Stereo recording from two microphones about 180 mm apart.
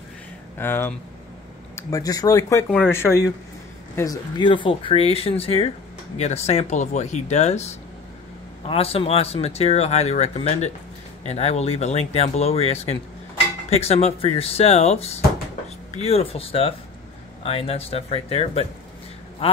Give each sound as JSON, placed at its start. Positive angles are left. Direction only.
{"t": 0.6, "sound": "speech", "side_deg": 10}